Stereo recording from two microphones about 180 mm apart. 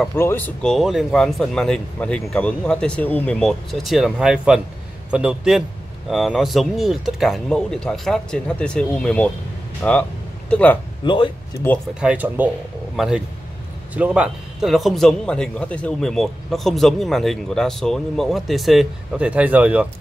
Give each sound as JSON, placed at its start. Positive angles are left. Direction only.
{"t": 0.1, "sound": "a man's voice", "side_deg": 15}
{"t": 11.1, "sound": "speech", "side_deg": 25}
{"t": 11.7, "sound": "a man's voice", "side_deg": 10}
{"t": 12.0, "sound": "a man's voice", "side_deg": -10}